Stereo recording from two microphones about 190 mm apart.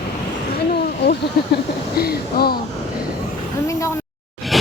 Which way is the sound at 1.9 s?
55° left (ahead or behind).